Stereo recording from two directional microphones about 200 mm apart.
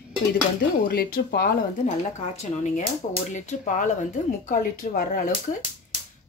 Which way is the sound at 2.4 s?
35° left (ahead or behind).